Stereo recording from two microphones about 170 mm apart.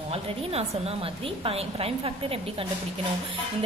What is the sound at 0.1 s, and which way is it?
A woman's voice, 35° right (ahead or behind).